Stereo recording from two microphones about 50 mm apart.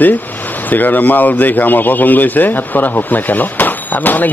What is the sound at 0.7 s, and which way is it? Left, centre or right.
A man's voice, left.